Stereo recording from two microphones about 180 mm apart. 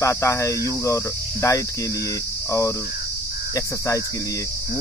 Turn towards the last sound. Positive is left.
turn(degrees=15)  # may be behind; listen again after turning